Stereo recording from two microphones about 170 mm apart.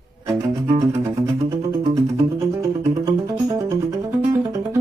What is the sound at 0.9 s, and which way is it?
Music, 20° right (ahead or behind).